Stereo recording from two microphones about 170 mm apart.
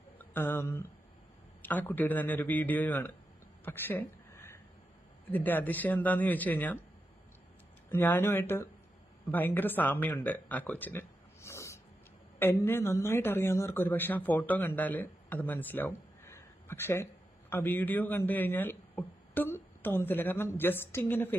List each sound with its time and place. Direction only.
0.2 s speech: 10° left (ahead or behind)
3.6 s a sound: 10° left (ahead or behind)
5.3 s speech: 10° left (ahead or behind)
7.9 s a man's voice: 10° left (ahead or behind)